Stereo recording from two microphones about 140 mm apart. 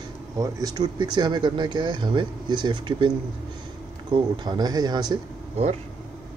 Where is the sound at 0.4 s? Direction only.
25° right (ahead or behind).